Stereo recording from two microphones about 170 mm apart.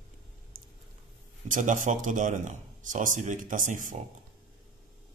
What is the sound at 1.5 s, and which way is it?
A man's voice, 50° right (ahead or behind).